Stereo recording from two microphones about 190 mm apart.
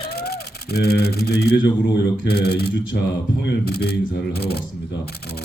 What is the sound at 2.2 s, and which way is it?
Speech, 60° left (ahead or behind).